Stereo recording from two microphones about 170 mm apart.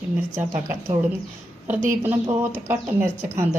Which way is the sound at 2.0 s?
10° right (ahead or behind).